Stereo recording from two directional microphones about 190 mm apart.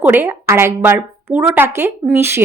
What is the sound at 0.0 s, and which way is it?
A woman's voice, 10° right (ahead or behind).